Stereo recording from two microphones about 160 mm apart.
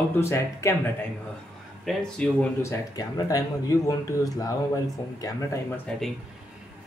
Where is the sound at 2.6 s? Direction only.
25° left (ahead or behind).